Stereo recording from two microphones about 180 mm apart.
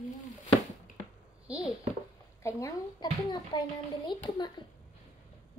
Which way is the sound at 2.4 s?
20° left (ahead or behind).